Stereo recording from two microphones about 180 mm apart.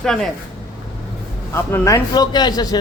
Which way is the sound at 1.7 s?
20° left (ahead or behind).